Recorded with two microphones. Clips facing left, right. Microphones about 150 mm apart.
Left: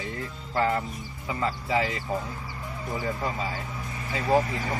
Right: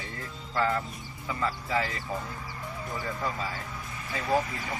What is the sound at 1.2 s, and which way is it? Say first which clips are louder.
Speech: left 2 dB; 20° left (ahead or behind).